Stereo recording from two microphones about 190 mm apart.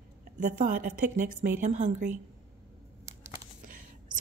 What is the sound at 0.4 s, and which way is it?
A woman's voice, 40° right (ahead or behind).